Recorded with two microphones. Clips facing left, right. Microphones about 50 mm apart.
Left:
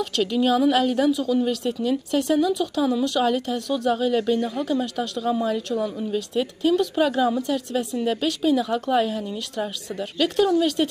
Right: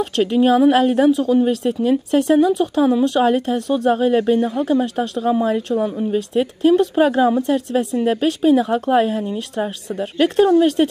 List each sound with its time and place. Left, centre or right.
0.2 s speech: right